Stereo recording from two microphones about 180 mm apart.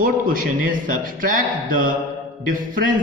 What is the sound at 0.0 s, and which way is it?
Speech, 50° right (ahead or behind).